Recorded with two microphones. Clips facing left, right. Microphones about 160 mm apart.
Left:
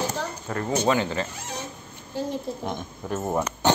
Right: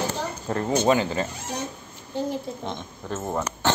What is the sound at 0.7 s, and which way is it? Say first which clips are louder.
Speech: right 2 dB; 20° right (ahead or behind).